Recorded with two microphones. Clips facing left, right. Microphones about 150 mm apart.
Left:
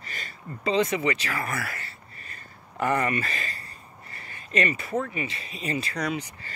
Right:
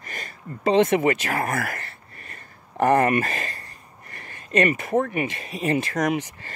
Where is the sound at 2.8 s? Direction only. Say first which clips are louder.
Right 7 dB; 50° right (ahead or behind).